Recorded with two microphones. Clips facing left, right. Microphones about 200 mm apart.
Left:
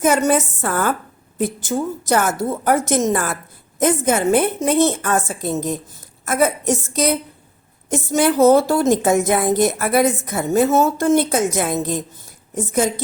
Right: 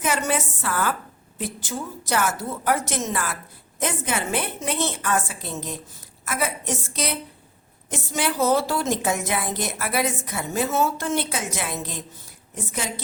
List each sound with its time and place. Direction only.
0.0 s a woman's voice: 45° left (ahead or behind)